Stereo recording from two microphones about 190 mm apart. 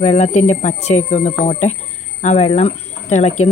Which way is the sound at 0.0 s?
35° left (ahead or behind).